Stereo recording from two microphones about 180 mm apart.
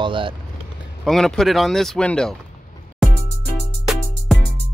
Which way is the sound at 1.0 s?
Centre (ahead or behind).